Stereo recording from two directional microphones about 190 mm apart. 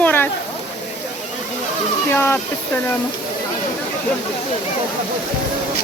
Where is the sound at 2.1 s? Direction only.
10° left (ahead or behind).